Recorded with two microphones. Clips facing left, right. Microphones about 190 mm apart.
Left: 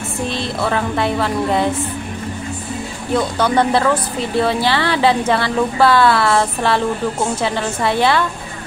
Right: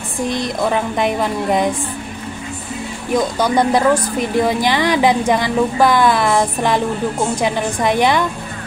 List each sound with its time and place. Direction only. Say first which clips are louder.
0.3 s a woman's voice: right 3 dB; 15° right (ahead or behind)
3.1 s a woman's voice: right 1 dB; 15° right (ahead or behind)